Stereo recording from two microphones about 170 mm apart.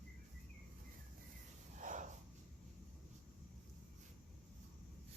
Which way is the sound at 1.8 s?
45° right (ahead or behind).